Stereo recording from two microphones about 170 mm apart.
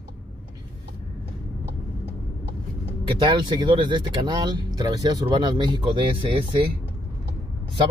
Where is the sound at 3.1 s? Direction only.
25° right (ahead or behind).